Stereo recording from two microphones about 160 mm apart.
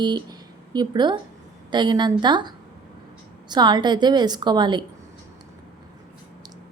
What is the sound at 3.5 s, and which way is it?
A woman's voice, 25° right (ahead or behind).